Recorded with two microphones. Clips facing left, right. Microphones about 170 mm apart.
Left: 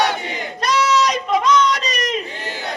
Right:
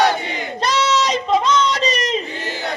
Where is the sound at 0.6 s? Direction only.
25° right (ahead or behind).